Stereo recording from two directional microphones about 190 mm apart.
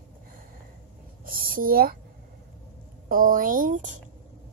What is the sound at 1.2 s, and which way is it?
Speech, 50° right (ahead or behind).